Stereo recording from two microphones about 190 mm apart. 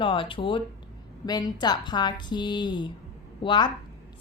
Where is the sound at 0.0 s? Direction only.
25° left (ahead or behind).